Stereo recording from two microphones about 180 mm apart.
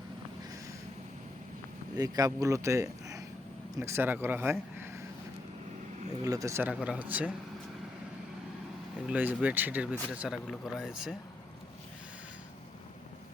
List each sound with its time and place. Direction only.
2.0 s speech: 20° right (ahead or behind)
6.2 s speech: 20° right (ahead or behind)
9.0 s speech: 10° right (ahead or behind)